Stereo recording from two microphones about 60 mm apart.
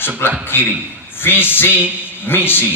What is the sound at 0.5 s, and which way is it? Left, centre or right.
A man's voice, left.